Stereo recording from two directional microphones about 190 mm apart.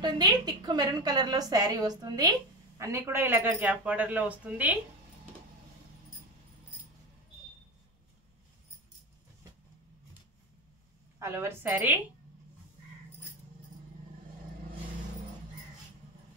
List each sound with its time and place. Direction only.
0.0 s a woman's voice: 20° right (ahead or behind)
11.1 s speech: 15° right (ahead or behind)